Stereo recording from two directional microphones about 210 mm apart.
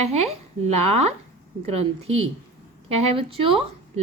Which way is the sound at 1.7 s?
30° right (ahead or behind).